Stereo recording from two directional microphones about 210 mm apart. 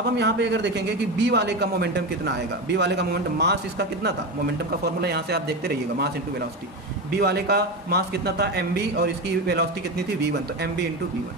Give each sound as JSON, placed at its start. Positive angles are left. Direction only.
{"t": 0.2, "sound": "a man's voice", "side_deg": -55}
{"t": 7.1, "sound": "a man's voice", "side_deg": -50}